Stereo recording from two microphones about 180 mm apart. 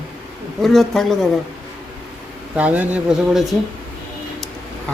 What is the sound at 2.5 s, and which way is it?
Speech, 10° right (ahead or behind).